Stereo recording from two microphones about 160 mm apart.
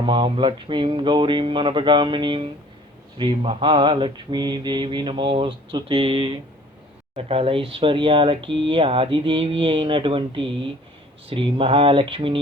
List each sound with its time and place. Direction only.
0.0 s speech: 30° right (ahead or behind)